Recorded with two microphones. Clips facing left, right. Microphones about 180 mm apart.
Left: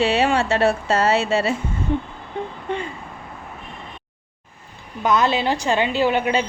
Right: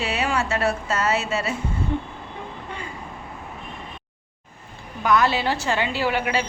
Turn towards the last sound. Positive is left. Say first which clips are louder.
# left 4 dB
turn(degrees=20)  # may be behind; listen again after turning